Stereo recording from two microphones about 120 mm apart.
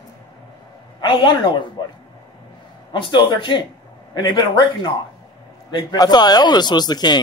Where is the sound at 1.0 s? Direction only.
45° left (ahead or behind).